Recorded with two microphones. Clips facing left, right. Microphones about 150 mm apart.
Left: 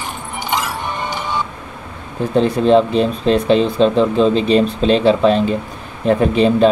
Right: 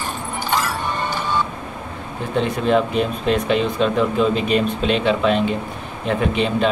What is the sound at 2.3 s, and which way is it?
A man's voice, 35° left (ahead or behind).